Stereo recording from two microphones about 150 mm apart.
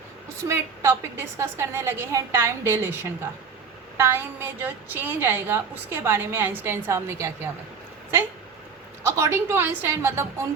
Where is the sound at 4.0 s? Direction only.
15° right (ahead or behind).